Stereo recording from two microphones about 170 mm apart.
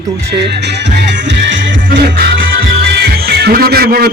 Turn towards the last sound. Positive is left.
turn(degrees=-65)  # may be behind; listen again after turning